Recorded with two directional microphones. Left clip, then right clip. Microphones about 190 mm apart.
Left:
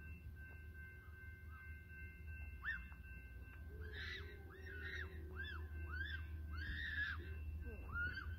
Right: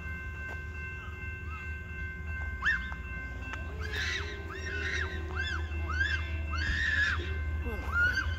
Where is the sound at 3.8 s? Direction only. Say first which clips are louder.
Right 16 dB; 30° left (ahead or behind).